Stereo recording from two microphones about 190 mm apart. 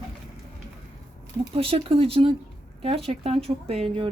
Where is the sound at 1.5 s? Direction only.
30° right (ahead or behind).